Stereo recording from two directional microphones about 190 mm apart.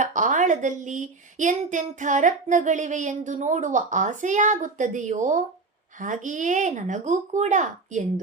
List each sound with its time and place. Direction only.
0.0 s speech: 40° right (ahead or behind)